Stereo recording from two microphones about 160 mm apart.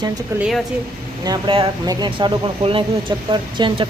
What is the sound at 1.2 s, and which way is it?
Speech, 30° right (ahead or behind).